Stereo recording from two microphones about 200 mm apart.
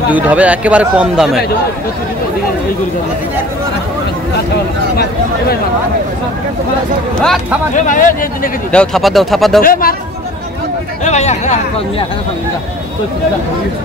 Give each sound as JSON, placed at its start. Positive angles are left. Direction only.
{"t": 0.1, "sound": "speech", "side_deg": -5}
{"t": 7.7, "sound": "speech", "side_deg": 40}
{"t": 8.7, "sound": "speech", "side_deg": 0}
{"t": 9.6, "sound": "speech", "side_deg": 45}
{"t": 11.1, "sound": "a sound", "side_deg": 35}